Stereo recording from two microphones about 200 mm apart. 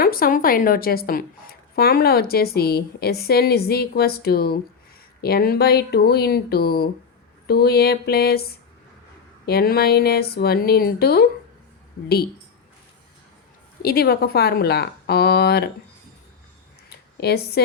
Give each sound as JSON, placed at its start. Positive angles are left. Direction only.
{"t": 0.0, "sound": "a woman's voice", "side_deg": 45}
{"t": 13.8, "sound": "a woman's voice", "side_deg": 50}
{"t": 17.2, "sound": "a woman's voice", "side_deg": 55}